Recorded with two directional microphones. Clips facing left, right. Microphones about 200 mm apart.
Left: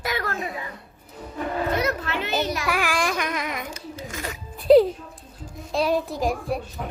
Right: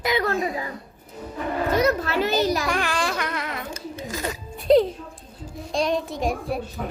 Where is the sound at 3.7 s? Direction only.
35° right (ahead or behind).